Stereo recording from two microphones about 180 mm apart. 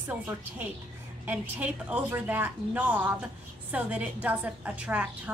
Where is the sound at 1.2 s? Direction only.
10° right (ahead or behind).